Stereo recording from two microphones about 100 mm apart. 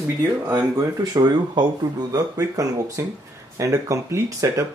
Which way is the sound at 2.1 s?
35° right (ahead or behind).